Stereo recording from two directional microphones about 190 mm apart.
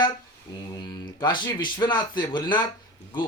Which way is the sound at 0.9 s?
20° left (ahead or behind).